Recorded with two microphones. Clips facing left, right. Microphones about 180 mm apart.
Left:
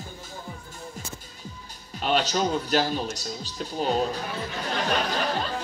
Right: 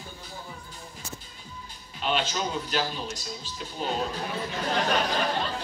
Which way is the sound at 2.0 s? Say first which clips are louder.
Left 4 dB; 45° left (ahead or behind).